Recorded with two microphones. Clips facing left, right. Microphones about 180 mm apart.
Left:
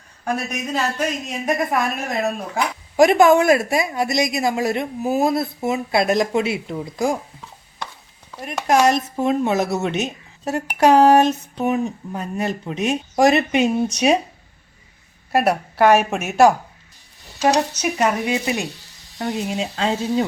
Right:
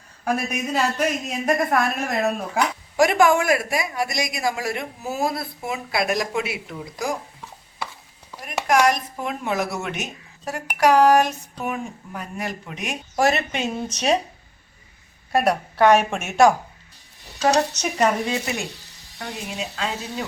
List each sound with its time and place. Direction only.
0.3 s speech: 10° right (ahead or behind)
1.5 s speech: centre (ahead or behind)
3.0 s speech: 20° left (ahead or behind)
8.6 s speech: 25° left (ahead or behind); by 14.2 s 10° left (ahead or behind)
15.3 s speech: 5° left (ahead or behind)
19.2 s speech: 30° left (ahead or behind)